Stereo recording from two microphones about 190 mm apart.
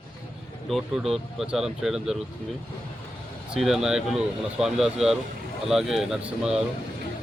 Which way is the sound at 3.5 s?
Centre (ahead or behind).